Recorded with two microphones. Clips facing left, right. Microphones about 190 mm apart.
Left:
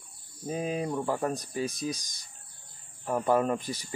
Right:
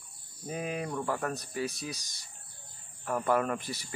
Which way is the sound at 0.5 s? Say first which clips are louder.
Left 4 dB; 25° left (ahead or behind).